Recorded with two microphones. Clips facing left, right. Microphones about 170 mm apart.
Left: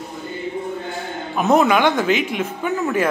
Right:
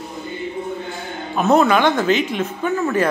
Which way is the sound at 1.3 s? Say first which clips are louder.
Right 1 dB; 15° left (ahead or behind).